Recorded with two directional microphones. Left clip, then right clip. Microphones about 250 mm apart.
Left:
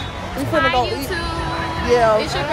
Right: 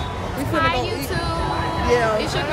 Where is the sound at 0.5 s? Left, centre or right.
Right.